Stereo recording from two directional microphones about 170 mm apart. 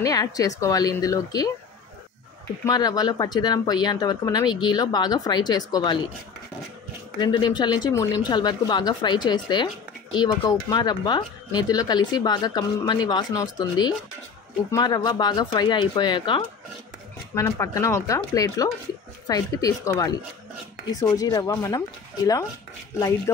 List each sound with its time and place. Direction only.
0.0 s speech: 20° left (ahead or behind)
2.6 s speech: 20° left (ahead or behind)
7.2 s speech: 25° left (ahead or behind)
17.3 s speech: 15° left (ahead or behind)
21.2 s speech: 20° left (ahead or behind)